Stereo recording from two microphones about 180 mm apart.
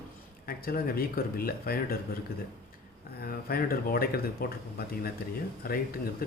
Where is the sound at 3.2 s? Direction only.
55° left (ahead or behind).